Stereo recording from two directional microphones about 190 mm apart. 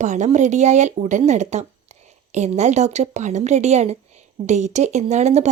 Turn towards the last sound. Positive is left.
turn(degrees=-35)  # may be behind; listen again after turning